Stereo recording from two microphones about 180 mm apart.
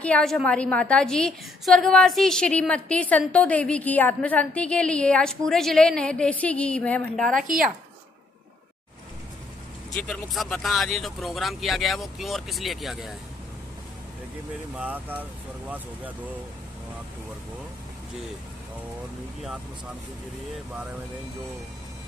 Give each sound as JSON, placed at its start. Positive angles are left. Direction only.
{"t": 0.0, "sound": "a woman's voice", "side_deg": 5}
{"t": 7.3, "sound": "speech", "side_deg": -50}
{"t": 9.9, "sound": "a woman's voice", "side_deg": 0}
{"t": 14.8, "sound": "speech", "side_deg": -10}